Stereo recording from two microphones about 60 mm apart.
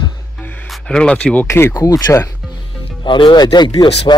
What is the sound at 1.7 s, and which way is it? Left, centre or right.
Speech, left.